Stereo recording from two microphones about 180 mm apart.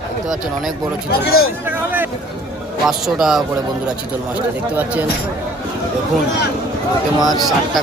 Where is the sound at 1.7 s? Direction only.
10° right (ahead or behind).